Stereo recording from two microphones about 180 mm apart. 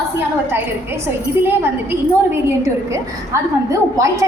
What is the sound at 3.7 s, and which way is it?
Speech, 20° right (ahead or behind).